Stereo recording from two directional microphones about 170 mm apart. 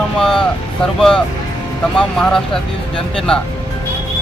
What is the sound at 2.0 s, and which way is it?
Speech, 5° left (ahead or behind).